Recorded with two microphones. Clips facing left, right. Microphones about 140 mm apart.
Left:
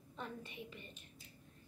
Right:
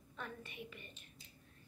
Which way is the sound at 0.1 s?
25° left (ahead or behind).